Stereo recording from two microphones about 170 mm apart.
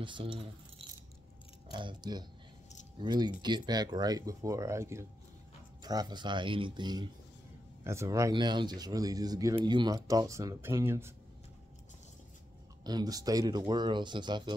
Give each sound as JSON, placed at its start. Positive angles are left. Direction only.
{"t": 0.0, "sound": "speech", "side_deg": -30}
{"t": 12.8, "sound": "speech", "side_deg": -25}